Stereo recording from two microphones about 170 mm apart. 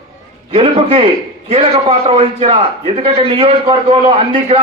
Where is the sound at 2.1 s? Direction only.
35° right (ahead or behind).